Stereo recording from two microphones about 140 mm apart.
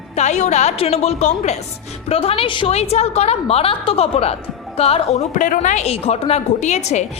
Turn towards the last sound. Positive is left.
turn(degrees=55)  # may be behind; listen again after turning